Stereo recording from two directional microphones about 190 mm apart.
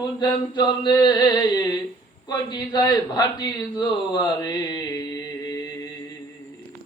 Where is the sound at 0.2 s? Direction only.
25° left (ahead or behind).